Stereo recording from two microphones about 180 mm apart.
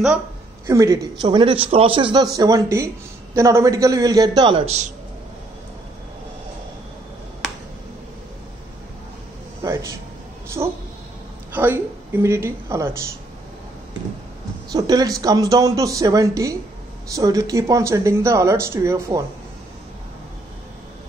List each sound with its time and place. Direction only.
0.7 s speech: 20° right (ahead or behind)
9.6 s a sound: 15° right (ahead or behind)
10.6 s a woman's voice: 15° right (ahead or behind)
14.7 s speech: 20° right (ahead or behind)